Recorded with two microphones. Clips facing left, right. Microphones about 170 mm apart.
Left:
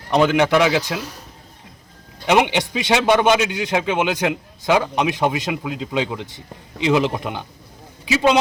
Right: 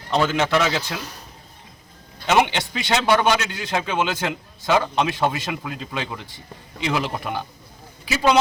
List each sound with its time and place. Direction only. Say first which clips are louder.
0.1 s a man's voice: left 4 dB; 15° left (ahead or behind)
2.2 s a man's voice: left 2 dB; 15° left (ahead or behind)